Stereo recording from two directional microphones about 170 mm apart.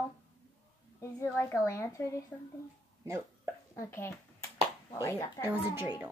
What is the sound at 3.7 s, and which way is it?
A woman's voice, 15° left (ahead or behind).